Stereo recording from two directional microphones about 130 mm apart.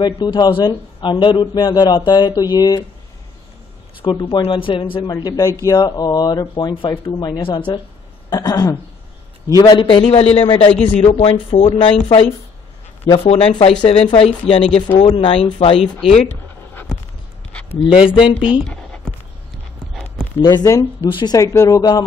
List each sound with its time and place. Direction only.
0.0 s a man's voice: 35° left (ahead or behind)
4.0 s a man's voice: 40° left (ahead or behind)
5.1 s a man's voice: 30° left (ahead or behind); by 15.9 s 45° left (ahead or behind)
17.5 s a sound: 10° left (ahead or behind)
17.9 s speech: 5° right (ahead or behind)
18.2 s a man's voice: 45° left (ahead or behind)
18.7 s a sound: 10° left (ahead or behind)
20.3 s speech: 30° left (ahead or behind)